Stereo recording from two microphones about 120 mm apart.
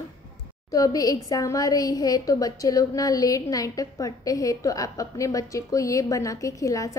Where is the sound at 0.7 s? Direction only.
30° left (ahead or behind).